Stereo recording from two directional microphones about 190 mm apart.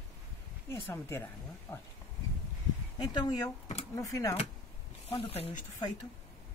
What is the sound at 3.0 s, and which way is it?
Speech, 20° left (ahead or behind).